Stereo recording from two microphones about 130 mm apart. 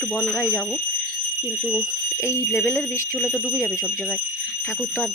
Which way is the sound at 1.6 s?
5° right (ahead or behind).